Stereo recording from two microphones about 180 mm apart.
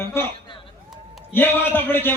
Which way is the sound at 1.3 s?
10° left (ahead or behind).